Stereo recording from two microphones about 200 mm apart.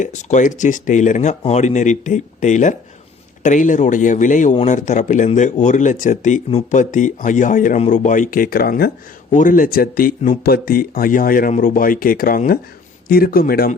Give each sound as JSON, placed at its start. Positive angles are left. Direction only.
{"t": 0.0, "sound": "speech", "side_deg": 35}